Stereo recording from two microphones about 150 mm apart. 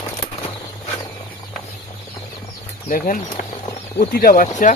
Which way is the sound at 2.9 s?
65° left (ahead or behind).